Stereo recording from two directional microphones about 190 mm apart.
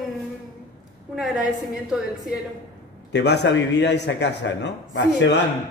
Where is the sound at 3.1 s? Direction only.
65° left (ahead or behind).